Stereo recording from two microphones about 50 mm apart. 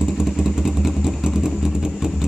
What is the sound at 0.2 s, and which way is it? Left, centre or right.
Motorcycle, centre.